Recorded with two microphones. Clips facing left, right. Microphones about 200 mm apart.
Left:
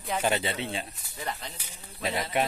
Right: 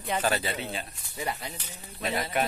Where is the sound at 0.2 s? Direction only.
25° left (ahead or behind).